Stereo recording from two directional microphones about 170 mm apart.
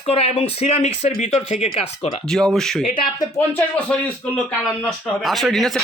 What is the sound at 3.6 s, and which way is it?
Speech, 5° left (ahead or behind).